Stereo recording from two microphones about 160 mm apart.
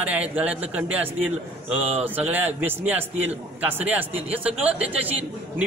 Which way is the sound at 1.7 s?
40° right (ahead or behind).